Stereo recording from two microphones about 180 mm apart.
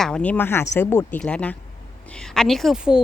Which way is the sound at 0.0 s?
5° left (ahead or behind).